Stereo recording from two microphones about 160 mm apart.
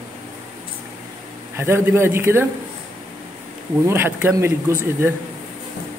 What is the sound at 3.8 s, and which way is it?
A man's voice, 15° right (ahead or behind).